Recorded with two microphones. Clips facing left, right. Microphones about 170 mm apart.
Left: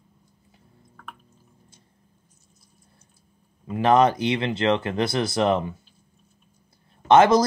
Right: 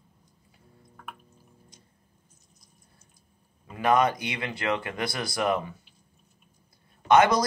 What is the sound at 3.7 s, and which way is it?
Speech, 25° left (ahead or behind).